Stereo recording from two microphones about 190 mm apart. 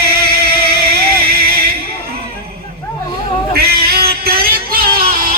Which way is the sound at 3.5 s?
55° right (ahead or behind).